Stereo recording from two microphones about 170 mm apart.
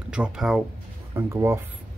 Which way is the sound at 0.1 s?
5° right (ahead or behind).